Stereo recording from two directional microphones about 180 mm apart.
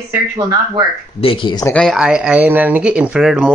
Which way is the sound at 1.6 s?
5° left (ahead or behind).